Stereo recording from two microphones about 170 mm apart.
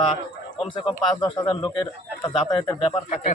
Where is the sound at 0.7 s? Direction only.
25° left (ahead or behind).